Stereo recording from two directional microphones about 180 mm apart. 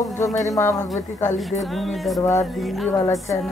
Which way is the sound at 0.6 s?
15° left (ahead or behind).